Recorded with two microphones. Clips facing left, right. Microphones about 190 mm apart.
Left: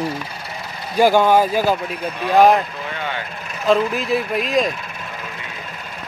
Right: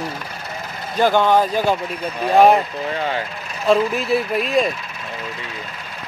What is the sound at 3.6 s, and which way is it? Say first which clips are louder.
Speech: even; centre (ahead or behind).